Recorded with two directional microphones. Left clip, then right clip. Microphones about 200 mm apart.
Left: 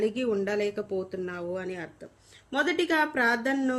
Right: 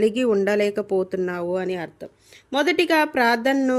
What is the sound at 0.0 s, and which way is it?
A woman's voice, 40° right (ahead or behind).